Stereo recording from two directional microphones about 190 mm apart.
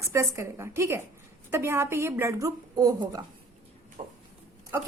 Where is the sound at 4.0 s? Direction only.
35° right (ahead or behind).